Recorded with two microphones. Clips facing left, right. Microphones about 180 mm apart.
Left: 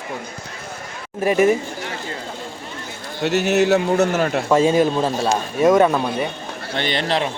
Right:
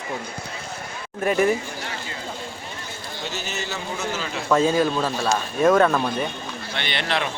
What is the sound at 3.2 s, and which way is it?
A man's voice, 70° left (ahead or behind).